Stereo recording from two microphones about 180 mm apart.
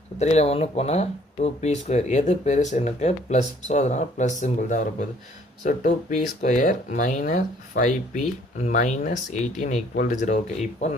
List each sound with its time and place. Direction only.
0.2 s speech: 35° left (ahead or behind)